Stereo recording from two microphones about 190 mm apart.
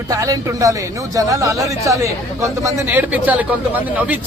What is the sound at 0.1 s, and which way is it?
Speech, 15° right (ahead or behind).